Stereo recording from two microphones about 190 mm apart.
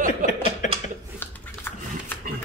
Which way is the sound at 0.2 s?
45° right (ahead or behind).